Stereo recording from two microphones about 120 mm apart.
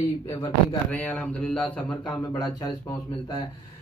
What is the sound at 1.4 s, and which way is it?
Speech, 10° left (ahead or behind).